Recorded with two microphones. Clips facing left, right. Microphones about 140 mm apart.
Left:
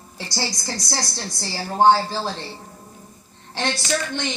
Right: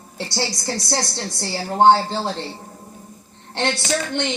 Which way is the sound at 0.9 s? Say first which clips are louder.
Right 4 dB; 20° right (ahead or behind).